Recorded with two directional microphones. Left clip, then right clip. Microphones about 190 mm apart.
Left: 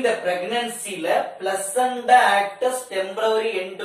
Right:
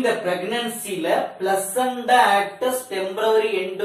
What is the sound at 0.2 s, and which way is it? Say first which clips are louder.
A man's voice: even; centre (ahead or behind).